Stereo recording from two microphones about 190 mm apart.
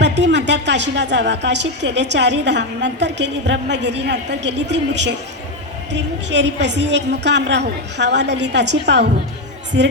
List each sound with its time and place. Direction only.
0.0 s a woman's voice: 65° right (ahead or behind)